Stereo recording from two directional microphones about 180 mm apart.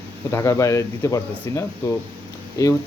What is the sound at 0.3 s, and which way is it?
Speech, 15° left (ahead or behind).